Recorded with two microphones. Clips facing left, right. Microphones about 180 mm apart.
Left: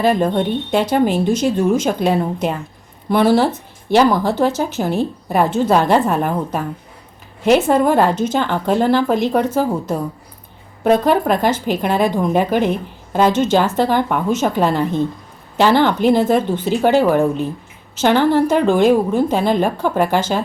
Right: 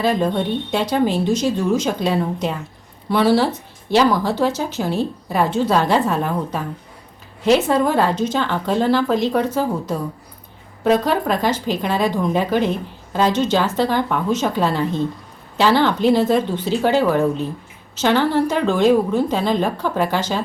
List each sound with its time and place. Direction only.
0.0 s a woman's voice: 55° left (ahead or behind)
10.8 s a woman's voice: 55° left (ahead or behind)
18.0 s a woman's voice: 50° left (ahead or behind)